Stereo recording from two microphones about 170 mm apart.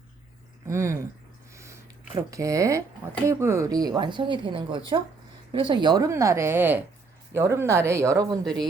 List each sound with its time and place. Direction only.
0.7 s a woman's voice: 15° right (ahead or behind)
2.1 s a woman's voice: 20° right (ahead or behind)